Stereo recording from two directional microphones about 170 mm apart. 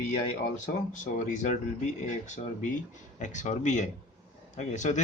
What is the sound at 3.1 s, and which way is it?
Speech, 45° left (ahead or behind).